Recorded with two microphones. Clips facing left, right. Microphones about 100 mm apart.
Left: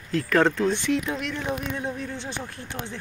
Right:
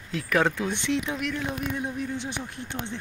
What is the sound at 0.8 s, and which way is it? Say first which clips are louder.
Speech: left 2 dB; 20° right (ahead or behind).